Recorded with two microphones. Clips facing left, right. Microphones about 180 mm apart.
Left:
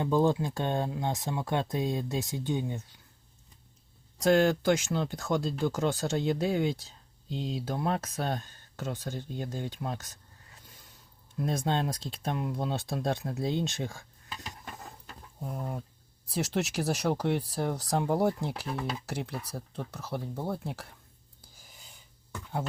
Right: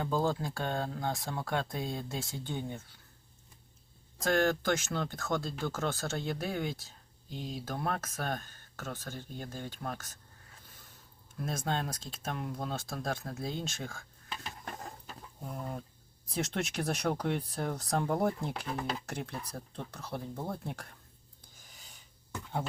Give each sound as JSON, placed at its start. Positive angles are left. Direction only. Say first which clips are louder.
{"t": 0.0, "sound": "speech", "louder": "left 5 dB", "side_deg": 20}
{"t": 4.2, "sound": "speech", "louder": "left 5 dB", "side_deg": 15}
{"t": 8.2, "sound": "speech", "louder": "left 4 dB", "side_deg": 20}
{"t": 11.4, "sound": "speech", "louder": "left 5 dB", "side_deg": 20}
{"t": 15.4, "sound": "speech", "louder": "left 3 dB", "side_deg": 5}